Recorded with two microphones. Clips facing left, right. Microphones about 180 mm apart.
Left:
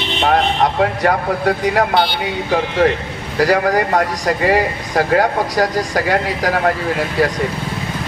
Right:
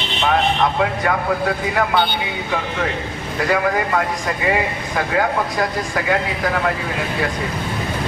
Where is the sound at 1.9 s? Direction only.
75° left (ahead or behind).